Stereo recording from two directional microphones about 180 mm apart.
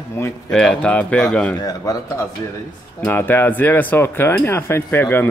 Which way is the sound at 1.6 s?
20° left (ahead or behind).